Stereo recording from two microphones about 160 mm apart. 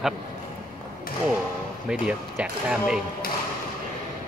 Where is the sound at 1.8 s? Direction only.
5° right (ahead or behind).